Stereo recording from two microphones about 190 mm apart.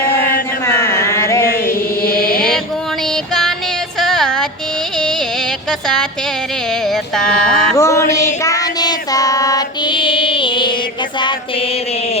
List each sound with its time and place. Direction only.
0.8 s a sound: 15° left (ahead or behind)
1.5 s chant: 50° left (ahead or behind)
4.0 s music: centre (ahead or behind)
6.9 s music: 5° left (ahead or behind)
7.8 s child singing: 15° left (ahead or behind)